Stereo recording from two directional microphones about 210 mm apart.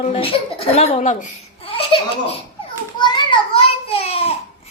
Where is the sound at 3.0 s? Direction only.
20° left (ahead or behind).